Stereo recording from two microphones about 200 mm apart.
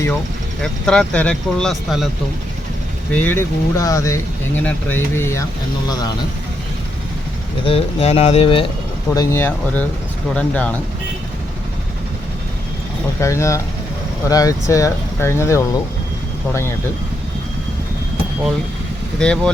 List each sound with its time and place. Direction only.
0.6 s speech: 5° left (ahead or behind)
3.1 s speech: 10° left (ahead or behind)
7.6 s speech: 30° left (ahead or behind)
9.1 s speech: 15° left (ahead or behind)
13.1 s speech: 15° left (ahead or behind)
19.2 s speech: 5° left (ahead or behind)